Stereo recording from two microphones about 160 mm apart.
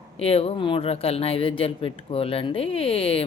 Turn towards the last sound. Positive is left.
turn(degrees=35)  # may be behind; listen again after turning